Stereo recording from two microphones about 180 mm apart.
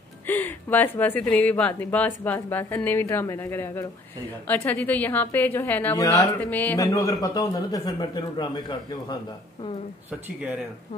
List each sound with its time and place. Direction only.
0.3 s a man's voice: 10° left (ahead or behind)